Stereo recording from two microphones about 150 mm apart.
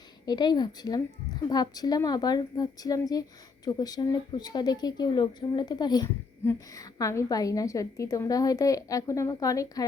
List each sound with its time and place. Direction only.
0.3 s a woman's voice: 25° left (ahead or behind)
6.1 s a woman's voice: 15° left (ahead or behind)